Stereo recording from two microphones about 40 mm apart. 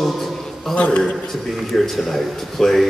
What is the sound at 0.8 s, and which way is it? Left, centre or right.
Speech, left.